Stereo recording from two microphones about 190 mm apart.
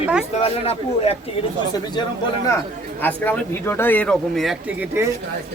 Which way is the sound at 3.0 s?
10° left (ahead or behind).